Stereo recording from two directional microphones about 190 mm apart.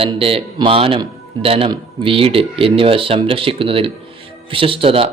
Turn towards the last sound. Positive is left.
turn(degrees=-30)  # may be behind; listen again after turning